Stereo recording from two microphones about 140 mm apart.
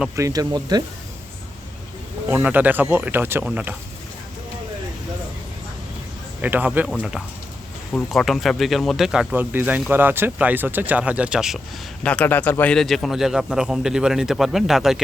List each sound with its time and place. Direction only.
0.2 s speech: 25° right (ahead or behind)
2.3 s speech: 10° right (ahead or behind)
6.4 s speech: 10° right (ahead or behind)
7.9 s a man's voice: centre (ahead or behind)
9.3 s speech: 15° right (ahead or behind)
12.0 s a man's voice: 10° left (ahead or behind)